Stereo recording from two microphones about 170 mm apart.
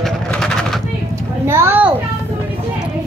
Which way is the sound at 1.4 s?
15° right (ahead or behind).